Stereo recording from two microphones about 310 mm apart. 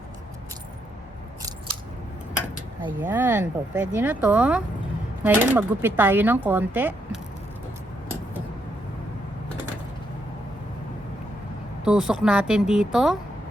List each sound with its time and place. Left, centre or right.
2.8 s speech: centre
11.9 s speech: centre